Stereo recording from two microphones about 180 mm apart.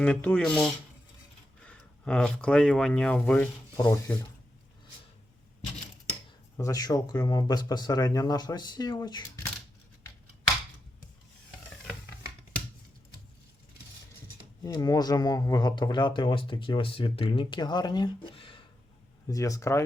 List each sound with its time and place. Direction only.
0.0 s speech: 5° left (ahead or behind)
3.8 s speech: 20° left (ahead or behind)
6.6 s speech: 20° left (ahead or behind)
14.6 s speech: 20° left (ahead or behind)
19.3 s speech: 15° left (ahead or behind)